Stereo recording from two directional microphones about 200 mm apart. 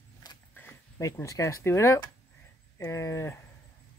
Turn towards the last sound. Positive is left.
turn(degrees=15)  # may be behind; listen again after turning